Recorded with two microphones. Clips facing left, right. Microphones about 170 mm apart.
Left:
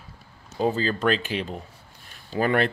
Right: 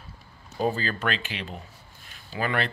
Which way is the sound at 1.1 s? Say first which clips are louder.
Left 7 dB; 40° left (ahead or behind).